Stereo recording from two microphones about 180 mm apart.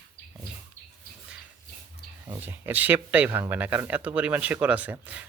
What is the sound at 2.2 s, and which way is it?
Speech, 10° right (ahead or behind).